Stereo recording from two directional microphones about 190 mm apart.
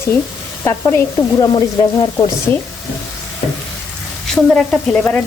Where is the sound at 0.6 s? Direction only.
15° left (ahead or behind).